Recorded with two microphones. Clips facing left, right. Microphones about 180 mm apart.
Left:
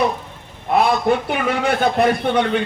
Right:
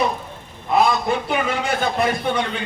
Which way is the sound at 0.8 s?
60° left (ahead or behind).